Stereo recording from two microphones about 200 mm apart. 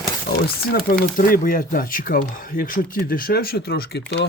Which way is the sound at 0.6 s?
50° left (ahead or behind).